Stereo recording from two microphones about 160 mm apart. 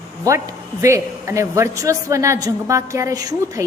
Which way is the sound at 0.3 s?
20° right (ahead or behind).